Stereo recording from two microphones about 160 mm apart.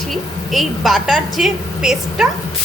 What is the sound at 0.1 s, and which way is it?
A woman's voice, centre (ahead or behind).